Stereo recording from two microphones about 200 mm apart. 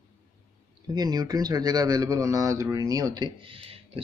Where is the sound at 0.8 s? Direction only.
20° right (ahead or behind).